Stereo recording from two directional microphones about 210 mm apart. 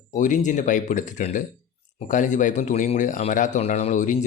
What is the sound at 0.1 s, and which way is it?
Speech, 35° left (ahead or behind).